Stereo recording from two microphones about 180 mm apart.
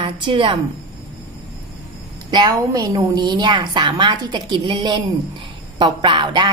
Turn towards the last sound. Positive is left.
turn(degrees=-25)  # may be behind; listen again after turning